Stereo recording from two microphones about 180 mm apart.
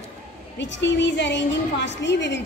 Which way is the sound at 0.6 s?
85° left.